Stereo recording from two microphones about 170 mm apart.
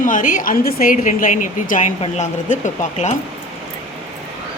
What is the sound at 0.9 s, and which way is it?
Speech, 45° left (ahead or behind).